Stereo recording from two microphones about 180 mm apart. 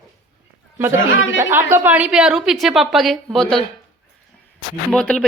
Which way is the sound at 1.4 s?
15° right (ahead or behind).